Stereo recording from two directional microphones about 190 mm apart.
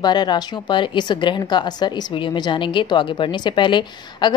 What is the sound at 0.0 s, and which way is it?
A woman's voice, 20° left (ahead or behind).